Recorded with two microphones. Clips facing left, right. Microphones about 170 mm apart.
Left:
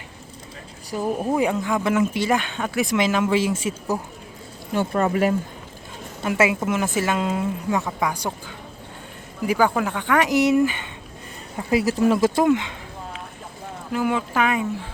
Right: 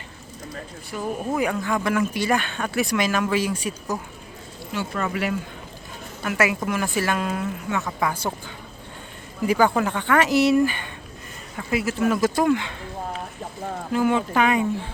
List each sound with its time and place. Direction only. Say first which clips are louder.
0.9 s speech: left 3 dB; 30° left (ahead or behind)
4.7 s speech: left 6 dB; 50° left (ahead or behind)
6.2 s speech: left 3 dB; 25° left (ahead or behind)
7.9 s speech: even; 10° left (ahead or behind)
11.7 s speech: left 3 dB; 35° left (ahead or behind); by 12.7 s 20° left (ahead or behind)
13.9 s speech: right 2 dB; 5° left (ahead or behind)